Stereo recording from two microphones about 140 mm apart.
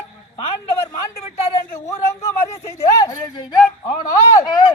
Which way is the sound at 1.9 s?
25° left (ahead or behind).